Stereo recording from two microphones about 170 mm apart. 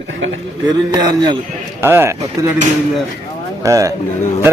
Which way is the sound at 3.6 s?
20° right (ahead or behind).